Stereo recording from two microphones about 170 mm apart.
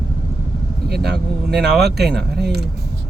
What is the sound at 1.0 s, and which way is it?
Speech, 75° right (ahead or behind).